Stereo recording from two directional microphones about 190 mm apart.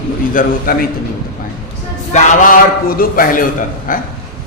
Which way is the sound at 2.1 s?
40° left (ahead or behind).